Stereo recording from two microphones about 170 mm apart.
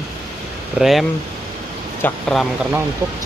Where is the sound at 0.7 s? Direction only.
Centre (ahead or behind).